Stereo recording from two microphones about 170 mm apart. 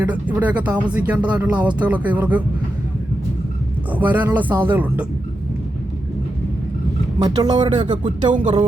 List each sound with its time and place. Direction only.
0.0 s speech: 10° right (ahead or behind)
3.9 s speech: 10° right (ahead or behind)
7.2 s speech: 25° right (ahead or behind)